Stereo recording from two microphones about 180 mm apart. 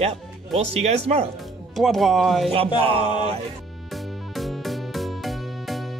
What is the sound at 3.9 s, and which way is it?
Music, centre (ahead or behind).